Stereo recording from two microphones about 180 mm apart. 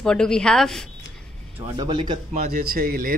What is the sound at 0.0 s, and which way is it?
Speech, 5° left (ahead or behind).